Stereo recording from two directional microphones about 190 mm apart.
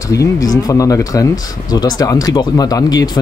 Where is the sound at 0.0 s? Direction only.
15° left (ahead or behind).